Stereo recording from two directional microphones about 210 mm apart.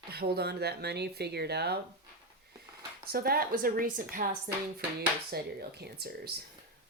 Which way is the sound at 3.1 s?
45° right (ahead or behind).